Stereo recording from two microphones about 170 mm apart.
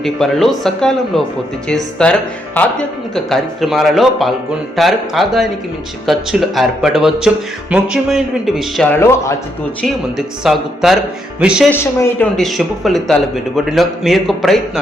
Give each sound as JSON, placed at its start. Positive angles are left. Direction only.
{"t": 0.0, "sound": "a man's voice", "side_deg": 0}
{"t": 8.9, "sound": "speech", "side_deg": 15}
{"t": 9.8, "sound": "a man's voice", "side_deg": 0}
{"t": 11.7, "sound": "speech", "side_deg": 15}
{"t": 12.4, "sound": "a man's voice", "side_deg": 0}